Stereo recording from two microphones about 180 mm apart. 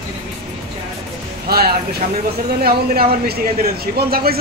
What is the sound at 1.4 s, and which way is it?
A man's voice, 60° right (ahead or behind).